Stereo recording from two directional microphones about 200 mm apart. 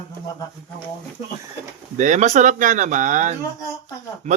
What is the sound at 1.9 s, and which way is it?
Speech, 40° right (ahead or behind).